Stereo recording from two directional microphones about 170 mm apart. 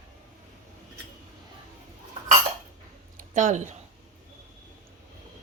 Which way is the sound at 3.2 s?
45° right (ahead or behind).